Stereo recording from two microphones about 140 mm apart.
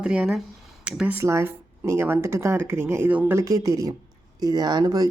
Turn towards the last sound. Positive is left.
turn(degrees=-30)  # may be behind; listen again after turning